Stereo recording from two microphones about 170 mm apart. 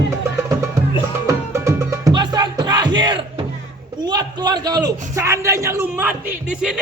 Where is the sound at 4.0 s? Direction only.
25° right (ahead or behind).